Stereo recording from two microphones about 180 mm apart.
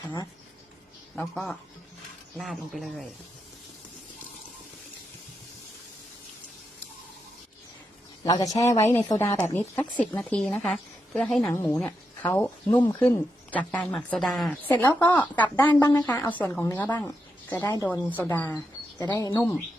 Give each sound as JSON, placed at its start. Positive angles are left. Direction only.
{"t": 1.1, "sound": "speech", "side_deg": 5}
{"t": 8.2, "sound": "speech", "side_deg": 20}
{"t": 11.4, "sound": "speech", "side_deg": 15}
{"t": 15.7, "sound": "speech", "side_deg": 20}
{"t": 16.0, "sound": "speech", "side_deg": 10}
{"t": 19.0, "sound": "speech", "side_deg": 20}